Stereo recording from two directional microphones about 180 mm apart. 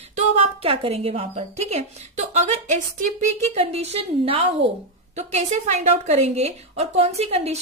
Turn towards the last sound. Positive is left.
turn(degrees=-35)  # may be behind; listen again after turning